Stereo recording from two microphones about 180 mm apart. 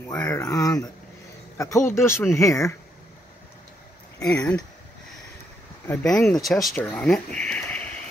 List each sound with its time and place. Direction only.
0.0 s speech: 15° left (ahead or behind)
4.2 s speech: 5° left (ahead or behind)
5.9 s speech: 5° left (ahead or behind)
7.0 s a sound: 5° left (ahead or behind)